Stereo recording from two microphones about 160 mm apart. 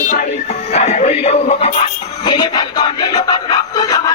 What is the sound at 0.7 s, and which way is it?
Music, 45° left (ahead or behind).